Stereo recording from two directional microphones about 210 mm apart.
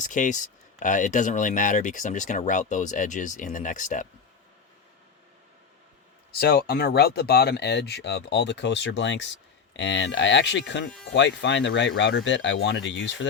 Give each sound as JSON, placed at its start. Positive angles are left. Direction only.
{"t": 0.0, "sound": "speech", "side_deg": 35}
{"t": 6.4, "sound": "speech", "side_deg": 50}